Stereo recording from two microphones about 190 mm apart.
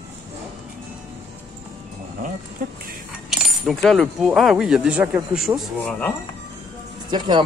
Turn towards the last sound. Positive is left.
turn(degrees=-25)  # may be behind; listen again after turning